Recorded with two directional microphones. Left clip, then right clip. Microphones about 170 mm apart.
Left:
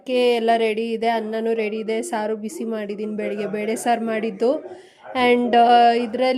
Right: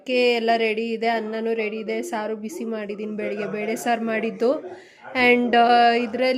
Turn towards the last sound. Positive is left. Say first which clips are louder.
# left 2 dB
turn(degrees=15)  # may be behind; listen again after turning